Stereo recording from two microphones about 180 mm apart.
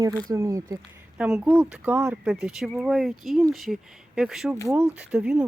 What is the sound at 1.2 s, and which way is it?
Speech, 5° right (ahead or behind).